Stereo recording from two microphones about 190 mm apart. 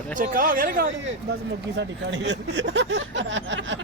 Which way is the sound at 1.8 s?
65° right (ahead or behind).